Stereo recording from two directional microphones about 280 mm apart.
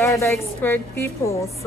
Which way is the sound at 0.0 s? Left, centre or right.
Centre.